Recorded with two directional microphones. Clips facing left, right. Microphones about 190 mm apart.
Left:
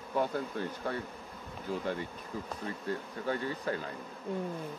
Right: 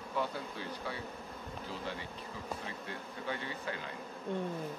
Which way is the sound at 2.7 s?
45° left (ahead or behind).